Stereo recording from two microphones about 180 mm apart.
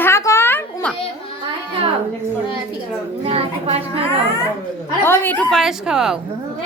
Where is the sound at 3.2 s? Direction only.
35° right (ahead or behind).